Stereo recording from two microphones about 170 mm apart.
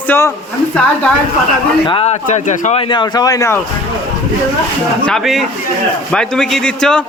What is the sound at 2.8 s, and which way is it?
Speech, 25° left (ahead or behind).